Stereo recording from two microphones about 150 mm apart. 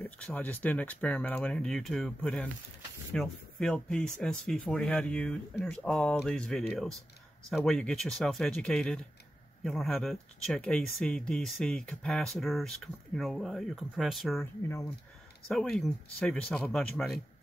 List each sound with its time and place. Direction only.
0.0 s speech: 10° left (ahead or behind)
14.4 s speech: 20° left (ahead or behind)
15.4 s speech: centre (ahead or behind)